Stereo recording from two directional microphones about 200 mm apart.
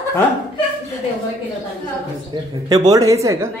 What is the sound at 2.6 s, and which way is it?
Speech, 20° right (ahead or behind).